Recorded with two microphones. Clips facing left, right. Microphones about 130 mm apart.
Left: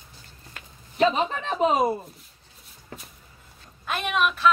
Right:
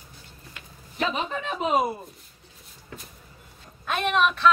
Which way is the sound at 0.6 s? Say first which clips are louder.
Left 7 dB; 35° left (ahead or behind).